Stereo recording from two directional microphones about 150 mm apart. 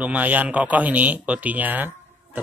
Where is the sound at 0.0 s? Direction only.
10° right (ahead or behind).